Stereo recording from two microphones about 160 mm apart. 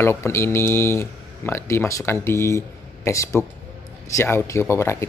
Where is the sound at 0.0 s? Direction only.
15° left (ahead or behind).